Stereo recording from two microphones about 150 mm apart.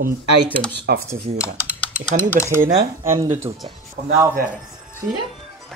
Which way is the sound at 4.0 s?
90° right.